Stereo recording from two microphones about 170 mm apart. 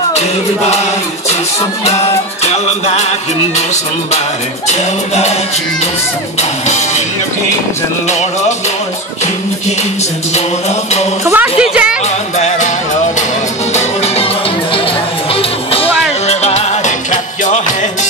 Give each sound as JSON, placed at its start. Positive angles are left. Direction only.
{"t": 2.4, "sound": "music", "side_deg": 40}
{"t": 4.6, "sound": "music", "side_deg": 40}
{"t": 8.1, "sound": "music", "side_deg": 45}
{"t": 11.2, "sound": "speech", "side_deg": -15}
{"t": 12.4, "sound": "music", "side_deg": 45}
{"t": 13.7, "sound": "music", "side_deg": 40}